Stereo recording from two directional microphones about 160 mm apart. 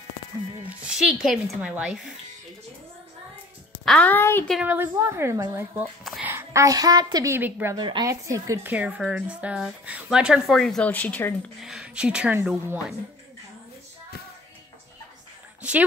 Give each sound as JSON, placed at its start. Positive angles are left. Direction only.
{"t": 0.7, "sound": "speech", "side_deg": -5}
{"t": 3.7, "sound": "a woman's voice", "side_deg": 5}
{"t": 4.5, "sound": "speech", "side_deg": -5}
{"t": 6.0, "sound": "a sound", "side_deg": -5}
{"t": 6.3, "sound": "speech", "side_deg": -20}
{"t": 7.7, "sound": "speech", "side_deg": -30}
{"t": 8.1, "sound": "speech", "side_deg": -20}
{"t": 8.7, "sound": "speech", "side_deg": -10}
{"t": 11.6, "sound": "speech", "side_deg": -5}